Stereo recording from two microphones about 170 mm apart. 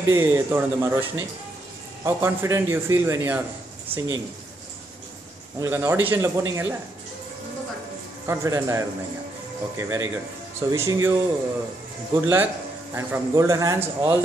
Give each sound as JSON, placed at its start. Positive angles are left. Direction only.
{"t": 0.0, "sound": "speech", "side_deg": -15}
{"t": 3.9, "sound": "speech", "side_deg": -35}
{"t": 5.6, "sound": "speech", "side_deg": -15}
{"t": 8.3, "sound": "speech", "side_deg": -15}
{"t": 12.2, "sound": "speech", "side_deg": -15}